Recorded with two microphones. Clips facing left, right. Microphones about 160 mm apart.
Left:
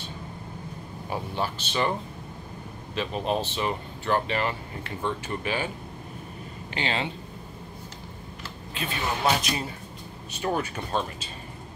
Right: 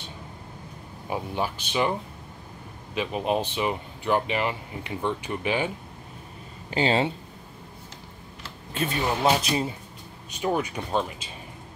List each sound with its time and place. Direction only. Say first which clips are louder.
1.1 s speech: right 2 dB; 15° right (ahead or behind)
6.7 s speech: right 7 dB; 35° right (ahead or behind)
8.7 s speech: right 6 dB; 40° right (ahead or behind)
9.0 s speech: right 2 dB; 25° right (ahead or behind)
10.3 s speech: right 2 dB; 15° right (ahead or behind)